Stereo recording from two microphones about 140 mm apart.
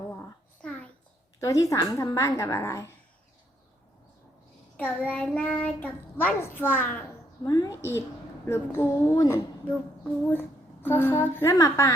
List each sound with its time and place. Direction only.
1.4 s a woman's voice: 25° left (ahead or behind)
4.8 s a child's voice: 10° left (ahead or behind)
7.4 s a woman's voice: 25° left (ahead or behind)